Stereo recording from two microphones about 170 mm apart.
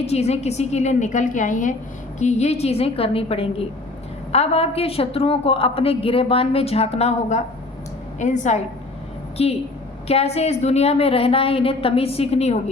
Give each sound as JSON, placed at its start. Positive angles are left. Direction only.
{"t": 0.0, "sound": "a woman's voice", "side_deg": 40}